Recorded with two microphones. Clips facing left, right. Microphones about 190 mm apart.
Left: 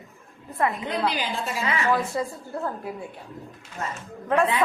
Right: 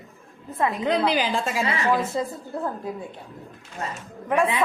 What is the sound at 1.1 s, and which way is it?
Speech, 90° right.